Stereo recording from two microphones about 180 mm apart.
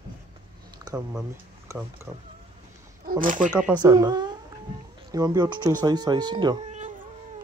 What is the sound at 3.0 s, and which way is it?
Speech, 50° right (ahead or behind).